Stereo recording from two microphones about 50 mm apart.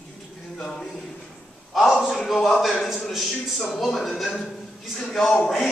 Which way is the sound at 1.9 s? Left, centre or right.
Centre.